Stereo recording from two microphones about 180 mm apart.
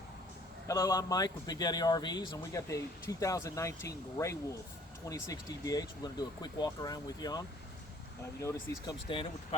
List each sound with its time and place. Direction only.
0.7 s speech: 20° left (ahead or behind)
9.0 s speech: 30° left (ahead or behind)